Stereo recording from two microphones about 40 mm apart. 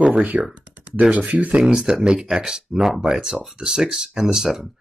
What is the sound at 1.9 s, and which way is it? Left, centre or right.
Speech, centre.